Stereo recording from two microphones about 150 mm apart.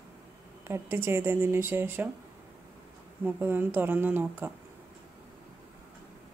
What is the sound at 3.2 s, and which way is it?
Speech, 15° right (ahead or behind).